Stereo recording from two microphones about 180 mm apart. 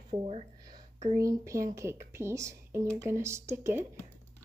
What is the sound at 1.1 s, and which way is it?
Speech, 15° right (ahead or behind).